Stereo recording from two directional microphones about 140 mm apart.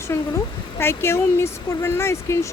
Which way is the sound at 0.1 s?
15° left (ahead or behind).